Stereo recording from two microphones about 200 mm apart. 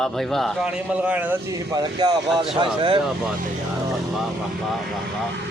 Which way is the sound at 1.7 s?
20° right (ahead or behind).